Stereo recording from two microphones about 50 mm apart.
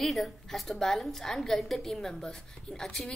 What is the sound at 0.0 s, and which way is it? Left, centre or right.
A woman's voice, centre.